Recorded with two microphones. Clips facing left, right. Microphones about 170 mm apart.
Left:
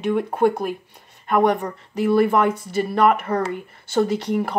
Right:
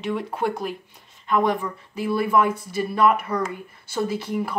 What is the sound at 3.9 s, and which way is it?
Speech, 65° left (ahead or behind).